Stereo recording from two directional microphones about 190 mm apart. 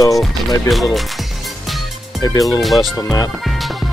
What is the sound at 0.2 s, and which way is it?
Speech, centre (ahead or behind).